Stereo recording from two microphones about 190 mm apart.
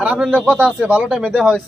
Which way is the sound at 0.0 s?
5° right (ahead or behind).